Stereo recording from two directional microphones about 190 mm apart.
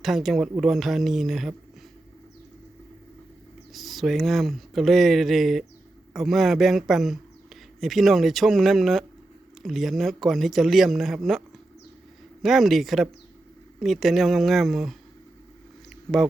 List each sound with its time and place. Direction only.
0.0 s speech: centre (ahead or behind)
3.7 s speech: centre (ahead or behind)